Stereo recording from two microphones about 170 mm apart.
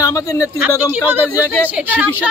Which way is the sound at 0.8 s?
10° right (ahead or behind).